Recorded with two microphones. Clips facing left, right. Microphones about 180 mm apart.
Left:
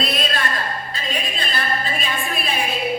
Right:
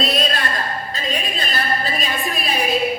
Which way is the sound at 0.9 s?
40° right (ahead or behind).